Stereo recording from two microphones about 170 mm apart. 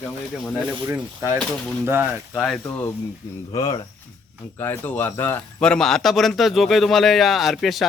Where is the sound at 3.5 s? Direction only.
25° left (ahead or behind).